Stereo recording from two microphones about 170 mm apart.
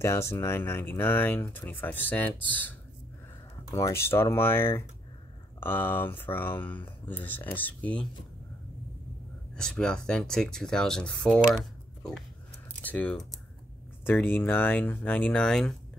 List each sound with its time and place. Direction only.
0.0 s speech: 15° left (ahead or behind)
3.7 s speech: 15° left (ahead or behind)
9.6 s speech: 5° left (ahead or behind)
11.5 s a sound: 5° left (ahead or behind)
12.8 s speech: 10° left (ahead or behind)